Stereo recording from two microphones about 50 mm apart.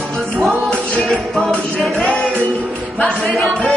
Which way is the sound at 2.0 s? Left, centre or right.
Left.